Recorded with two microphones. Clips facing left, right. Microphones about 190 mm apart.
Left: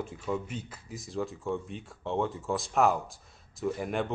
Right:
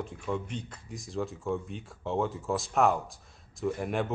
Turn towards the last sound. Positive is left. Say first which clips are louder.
# even
turn(degrees=0)  # may be behind; listen again after turning